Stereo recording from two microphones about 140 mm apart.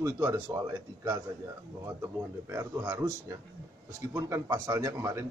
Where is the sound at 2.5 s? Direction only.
20° right (ahead or behind).